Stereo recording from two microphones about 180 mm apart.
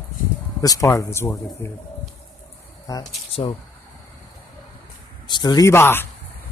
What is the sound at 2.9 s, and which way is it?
Speech, 20° left (ahead or behind).